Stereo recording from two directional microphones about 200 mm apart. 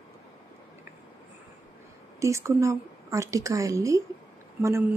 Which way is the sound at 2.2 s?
15° right (ahead or behind).